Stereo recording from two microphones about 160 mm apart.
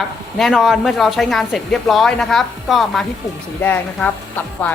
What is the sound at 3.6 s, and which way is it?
Speech, 10° left (ahead or behind).